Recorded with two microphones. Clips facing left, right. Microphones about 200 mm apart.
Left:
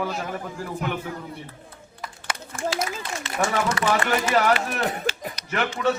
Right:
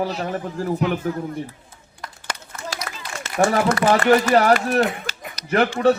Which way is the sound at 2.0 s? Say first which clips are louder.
Even; 5° left (ahead or behind).